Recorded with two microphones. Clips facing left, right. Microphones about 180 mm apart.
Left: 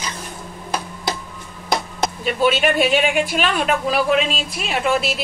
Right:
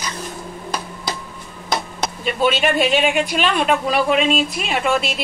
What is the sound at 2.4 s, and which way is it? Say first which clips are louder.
Speech: even; 5° left (ahead or behind).